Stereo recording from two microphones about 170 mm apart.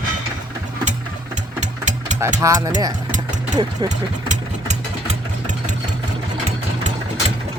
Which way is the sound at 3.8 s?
45° right (ahead or behind).